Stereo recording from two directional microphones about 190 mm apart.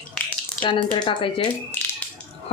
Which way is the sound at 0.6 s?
25° left (ahead or behind).